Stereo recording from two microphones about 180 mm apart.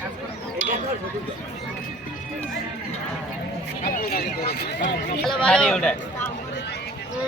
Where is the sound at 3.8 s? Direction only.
55° left (ahead or behind).